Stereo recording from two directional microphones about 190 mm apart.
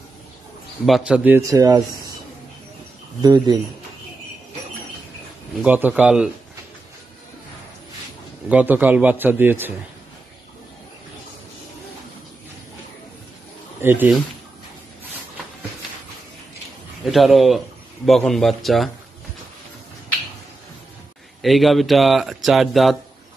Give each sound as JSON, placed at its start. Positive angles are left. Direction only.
{"t": 0.8, "sound": "a man's voice", "side_deg": 0}
{"t": 3.2, "sound": "speech", "side_deg": -20}
{"t": 5.6, "sound": "a man's voice", "side_deg": -10}
{"t": 8.5, "sound": "a man's voice", "side_deg": -10}
{"t": 13.7, "sound": "speech", "side_deg": -10}
{"t": 17.0, "sound": "speech", "side_deg": 0}
{"t": 21.4, "sound": "speech", "side_deg": 0}